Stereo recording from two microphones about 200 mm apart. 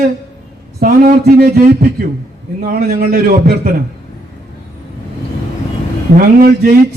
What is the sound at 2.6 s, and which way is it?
A man's voice, 50° right (ahead or behind).